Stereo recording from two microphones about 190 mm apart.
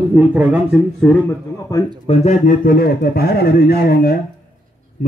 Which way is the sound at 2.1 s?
30° left (ahead or behind).